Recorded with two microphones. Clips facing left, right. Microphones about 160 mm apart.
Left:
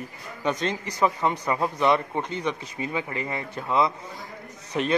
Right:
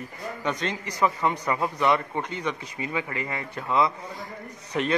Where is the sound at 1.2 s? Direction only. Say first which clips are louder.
Left 1 dB; 20° left (ahead or behind).